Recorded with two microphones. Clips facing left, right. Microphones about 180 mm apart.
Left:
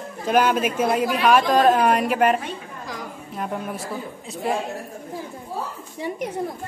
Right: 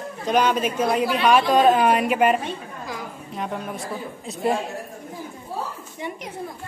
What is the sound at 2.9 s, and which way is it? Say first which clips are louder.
Chatter: even; centre (ahead or behind).